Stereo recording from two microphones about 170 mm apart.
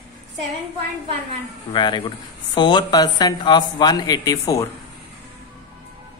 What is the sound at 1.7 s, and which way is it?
Speech, 25° left (ahead or behind).